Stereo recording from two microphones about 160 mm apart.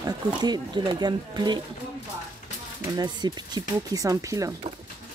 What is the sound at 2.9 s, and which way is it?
Speech, 25° right (ahead or behind).